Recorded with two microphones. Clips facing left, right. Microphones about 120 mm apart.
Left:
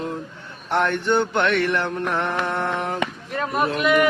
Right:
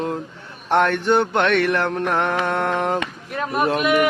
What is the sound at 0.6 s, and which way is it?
Mantra, 70° right (ahead or behind).